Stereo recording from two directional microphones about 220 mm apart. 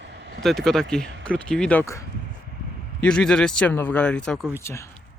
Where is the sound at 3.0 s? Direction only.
5° left (ahead or behind).